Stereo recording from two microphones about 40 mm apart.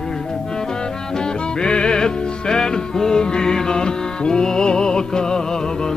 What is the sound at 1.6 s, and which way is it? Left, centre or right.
Music, left.